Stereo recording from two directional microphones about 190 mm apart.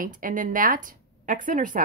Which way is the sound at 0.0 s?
45° right (ahead or behind).